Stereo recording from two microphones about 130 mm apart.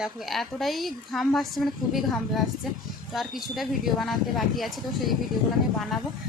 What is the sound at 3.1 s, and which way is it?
A woman's voice, centre (ahead or behind).